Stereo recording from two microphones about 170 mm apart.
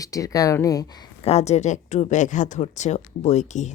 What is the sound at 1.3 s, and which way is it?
Speech, 40° left (ahead or behind).